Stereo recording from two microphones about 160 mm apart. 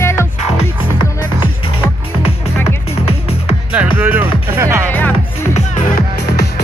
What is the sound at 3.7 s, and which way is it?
Music, 10° right (ahead or behind).